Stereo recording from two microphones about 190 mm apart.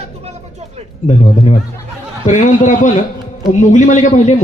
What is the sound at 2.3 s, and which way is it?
A man's voice, 40° left (ahead or behind).